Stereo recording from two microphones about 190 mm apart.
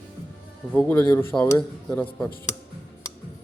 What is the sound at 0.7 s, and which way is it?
Speech, 10° left (ahead or behind).